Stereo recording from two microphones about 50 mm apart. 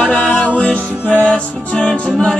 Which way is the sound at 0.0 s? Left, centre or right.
Left.